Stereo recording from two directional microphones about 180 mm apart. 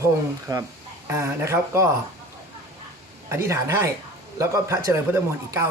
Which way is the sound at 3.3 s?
15° right (ahead or behind).